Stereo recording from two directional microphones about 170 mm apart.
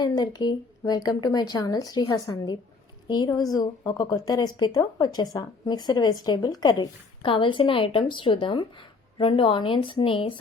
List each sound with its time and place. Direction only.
0.0 s a woman's voice: 25° left (ahead or behind)